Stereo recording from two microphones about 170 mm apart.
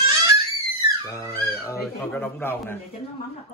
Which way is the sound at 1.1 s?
15° left (ahead or behind).